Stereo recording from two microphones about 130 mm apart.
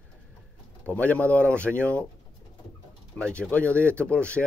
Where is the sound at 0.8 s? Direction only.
10° left (ahead or behind).